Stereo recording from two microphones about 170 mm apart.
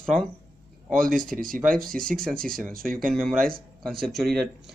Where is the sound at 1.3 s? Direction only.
55° right (ahead or behind).